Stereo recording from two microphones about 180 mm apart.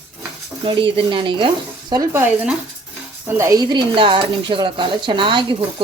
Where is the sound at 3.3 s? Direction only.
20° right (ahead or behind).